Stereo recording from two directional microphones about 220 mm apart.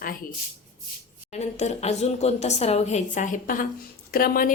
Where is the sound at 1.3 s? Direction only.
30° left (ahead or behind).